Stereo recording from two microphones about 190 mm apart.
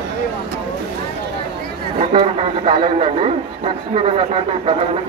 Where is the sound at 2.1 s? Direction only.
35° right (ahead or behind).